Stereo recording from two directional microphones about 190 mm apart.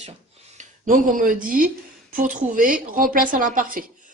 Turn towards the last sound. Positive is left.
turn(degrees=-45)  # may be behind; listen again after turning